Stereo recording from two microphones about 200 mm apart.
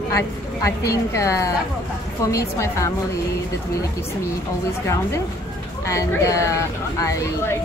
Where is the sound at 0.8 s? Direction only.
15° left (ahead or behind).